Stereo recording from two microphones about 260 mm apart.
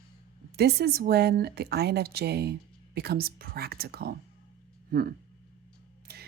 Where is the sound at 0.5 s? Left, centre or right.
Right.